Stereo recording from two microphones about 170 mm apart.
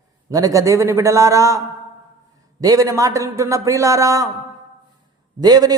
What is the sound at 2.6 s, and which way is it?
Speech, 20° right (ahead or behind).